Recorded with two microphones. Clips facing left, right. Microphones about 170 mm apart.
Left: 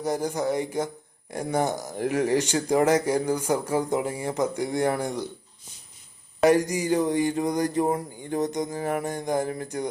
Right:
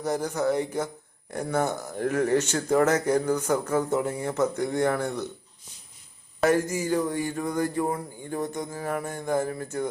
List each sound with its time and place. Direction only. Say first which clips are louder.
0.0 s speech: even; 10° left (ahead or behind)
6.4 s speech: left 3 dB; 15° left (ahead or behind)
8.8 s mantra: left 1 dB; 20° left (ahead or behind)
9.1 s speech: even; 15° left (ahead or behind)